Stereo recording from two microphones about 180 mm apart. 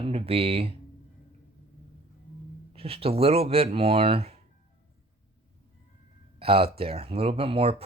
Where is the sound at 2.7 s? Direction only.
30° right (ahead or behind).